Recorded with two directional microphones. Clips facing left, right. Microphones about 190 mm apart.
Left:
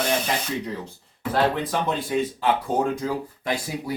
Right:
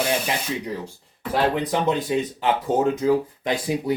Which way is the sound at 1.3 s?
20° right (ahead or behind).